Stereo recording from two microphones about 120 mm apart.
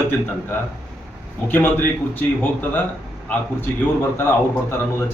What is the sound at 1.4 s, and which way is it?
A man's voice, 15° left (ahead or behind).